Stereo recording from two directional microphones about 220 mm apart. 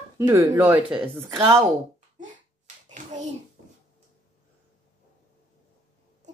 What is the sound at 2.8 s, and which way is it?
Hands, 35° right (ahead or behind).